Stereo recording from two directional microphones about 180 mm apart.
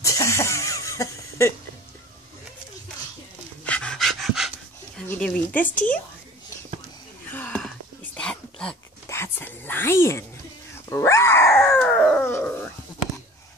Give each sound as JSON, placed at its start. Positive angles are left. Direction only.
{"t": 0.0, "sound": "a sound", "side_deg": 15}
{"t": 3.6, "sound": "dog", "side_deg": 5}
{"t": 4.9, "sound": "speech", "side_deg": 5}
{"t": 7.2, "sound": "a sound", "side_deg": 10}
{"t": 9.0, "sound": "whispering", "side_deg": 15}
{"t": 10.9, "sound": "speech", "side_deg": 15}
{"t": 12.3, "sound": "speech", "side_deg": 15}